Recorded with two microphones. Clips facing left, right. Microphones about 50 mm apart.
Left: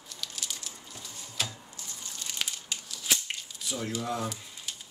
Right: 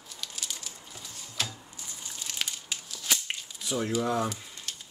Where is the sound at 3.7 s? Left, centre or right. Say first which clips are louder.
Right 5 dB; centre.